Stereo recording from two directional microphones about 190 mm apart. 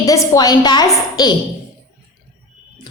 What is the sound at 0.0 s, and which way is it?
A woman's voice, 15° left (ahead or behind).